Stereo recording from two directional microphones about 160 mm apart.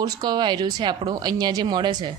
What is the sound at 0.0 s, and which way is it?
Speech, 25° right (ahead or behind).